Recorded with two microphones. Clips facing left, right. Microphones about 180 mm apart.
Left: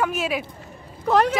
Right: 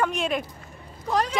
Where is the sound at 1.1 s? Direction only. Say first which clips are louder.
Left 6 dB; 65° left (ahead or behind).